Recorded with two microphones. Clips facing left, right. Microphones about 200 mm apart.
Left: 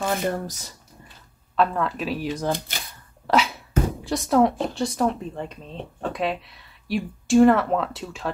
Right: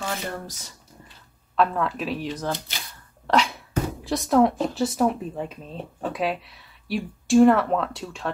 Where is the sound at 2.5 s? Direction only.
50° left (ahead or behind).